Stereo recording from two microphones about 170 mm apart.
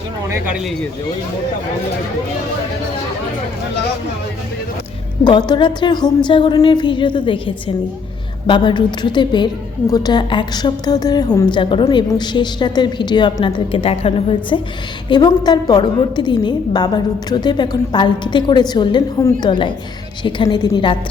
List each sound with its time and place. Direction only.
5.2 s a woman's voice: 25° left (ahead or behind)